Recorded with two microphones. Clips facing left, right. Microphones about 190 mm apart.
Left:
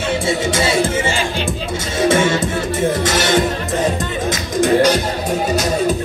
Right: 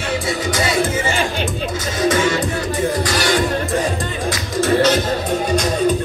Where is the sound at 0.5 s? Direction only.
25° left (ahead or behind).